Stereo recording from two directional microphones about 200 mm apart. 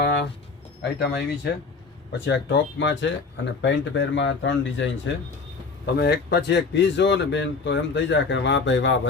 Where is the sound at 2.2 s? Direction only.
65° left (ahead or behind).